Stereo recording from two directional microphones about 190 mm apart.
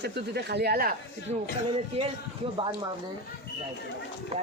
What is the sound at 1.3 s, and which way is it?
Speech, 30° right (ahead or behind).